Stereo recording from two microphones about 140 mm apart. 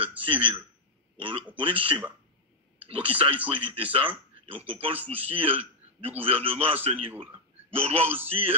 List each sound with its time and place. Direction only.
0.2 s a man's voice: 40° right (ahead or behind)